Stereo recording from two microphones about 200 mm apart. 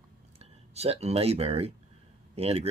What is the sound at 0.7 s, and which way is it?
Speech, 30° right (ahead or behind).